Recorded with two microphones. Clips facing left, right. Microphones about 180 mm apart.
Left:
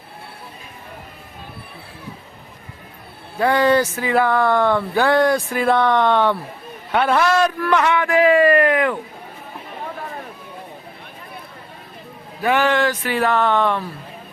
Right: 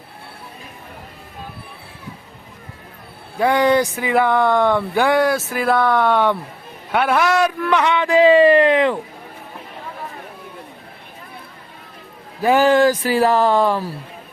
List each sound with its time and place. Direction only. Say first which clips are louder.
3.3 s speech: right 1 dB; 15° right (ahead or behind)
7.6 s a man's voice: even; 15° right (ahead or behind)
12.4 s speech: right 4 dB; 35° right (ahead or behind)